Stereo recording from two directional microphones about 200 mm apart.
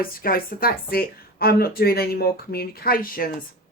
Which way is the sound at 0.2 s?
50° left (ahead or behind).